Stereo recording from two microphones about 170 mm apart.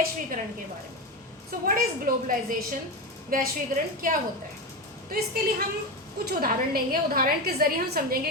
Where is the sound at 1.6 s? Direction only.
55° right (ahead or behind).